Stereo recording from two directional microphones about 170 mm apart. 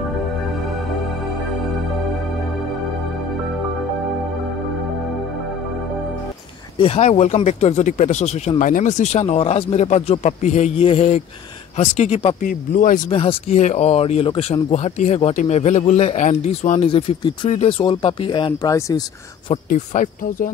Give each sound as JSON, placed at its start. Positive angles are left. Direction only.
{"t": 6.8, "sound": "speech", "side_deg": 40}
{"t": 12.4, "sound": "speech", "side_deg": 55}
{"t": 13.1, "sound": "speech", "side_deg": 35}
{"t": 16.9, "sound": "speech", "side_deg": 30}
{"t": 19.7, "sound": "speech", "side_deg": 50}